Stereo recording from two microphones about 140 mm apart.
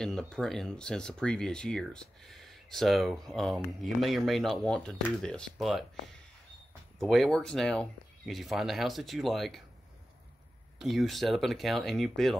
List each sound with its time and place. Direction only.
0.0 s speech: 5° left (ahead or behind)
7.0 s speech: centre (ahead or behind)
10.8 s speech: centre (ahead or behind)